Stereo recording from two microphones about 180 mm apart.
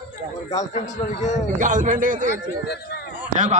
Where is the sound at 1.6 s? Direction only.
45° right (ahead or behind).